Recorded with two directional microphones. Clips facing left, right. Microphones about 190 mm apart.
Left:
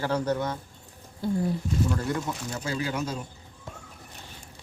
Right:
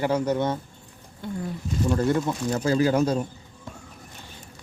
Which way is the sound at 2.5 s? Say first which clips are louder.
Right 12 dB; 40° right (ahead or behind).